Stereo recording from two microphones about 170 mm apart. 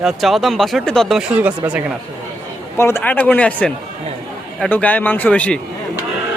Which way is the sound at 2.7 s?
15° left (ahead or behind).